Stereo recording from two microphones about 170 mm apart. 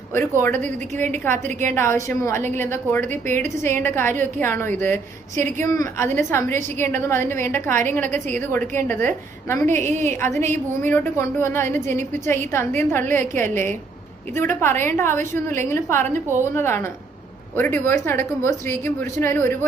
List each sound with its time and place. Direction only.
0.1 s a woman's voice: 15° left (ahead or behind)
3.1 s a woman's voice: 45° right (ahead or behind)
3.6 s a woman's voice: 15° left (ahead or behind)
9.6 s a woman's voice: 45° right (ahead or behind)
10.3 s a woman's voice: 15° left (ahead or behind)